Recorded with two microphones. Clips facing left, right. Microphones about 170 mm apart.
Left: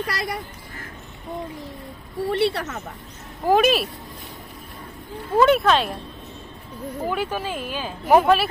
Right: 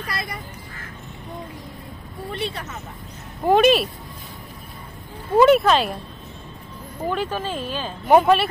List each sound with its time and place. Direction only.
0.0 s speech: 80° left
2.2 s speech: 75° left (ahead or behind)
3.4 s speech: centre (ahead or behind)
5.4 s speech: centre (ahead or behind)
7.1 s speech: 10° left (ahead or behind)
8.0 s speech: centre (ahead or behind)